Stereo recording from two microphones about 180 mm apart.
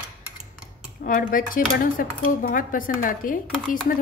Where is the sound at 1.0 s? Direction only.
50° left (ahead or behind).